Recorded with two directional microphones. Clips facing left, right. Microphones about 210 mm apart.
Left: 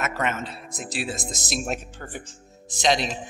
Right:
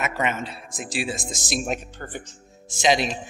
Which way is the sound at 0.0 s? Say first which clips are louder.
Right 1 dB; centre (ahead or behind).